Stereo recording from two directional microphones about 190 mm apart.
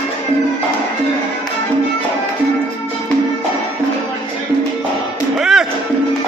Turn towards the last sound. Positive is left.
turn(degrees=-5)  # may be behind; listen again after turning